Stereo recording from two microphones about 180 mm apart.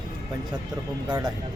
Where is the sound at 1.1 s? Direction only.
20° right (ahead or behind).